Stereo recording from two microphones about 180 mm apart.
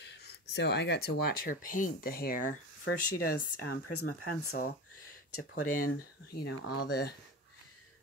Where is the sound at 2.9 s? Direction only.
90° left.